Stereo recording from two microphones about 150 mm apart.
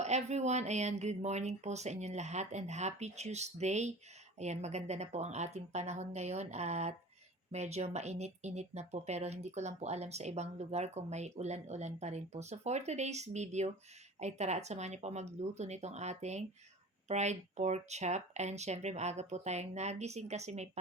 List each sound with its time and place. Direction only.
0.0 s speech: 50° right (ahead or behind)